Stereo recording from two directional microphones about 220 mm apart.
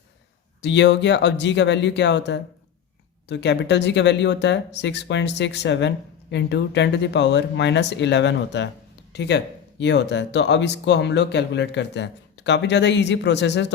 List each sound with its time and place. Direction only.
0.6 s speech: 50° left (ahead or behind)